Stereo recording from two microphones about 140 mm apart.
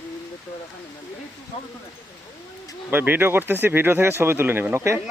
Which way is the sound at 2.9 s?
15° right (ahead or behind).